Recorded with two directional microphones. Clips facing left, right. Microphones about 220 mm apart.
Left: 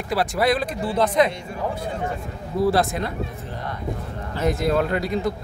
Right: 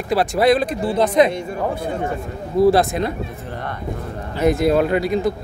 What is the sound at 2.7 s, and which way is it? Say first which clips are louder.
Speech: right 4 dB; 20° right (ahead or behind).